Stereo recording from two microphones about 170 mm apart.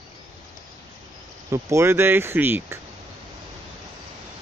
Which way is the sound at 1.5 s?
15° right (ahead or behind).